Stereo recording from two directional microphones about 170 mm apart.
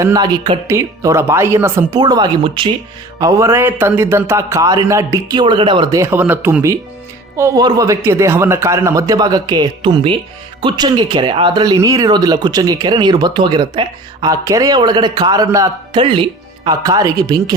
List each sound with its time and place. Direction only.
0.0 s speech: 20° right (ahead or behind)
3.2 s a man's voice: 20° right (ahead or behind)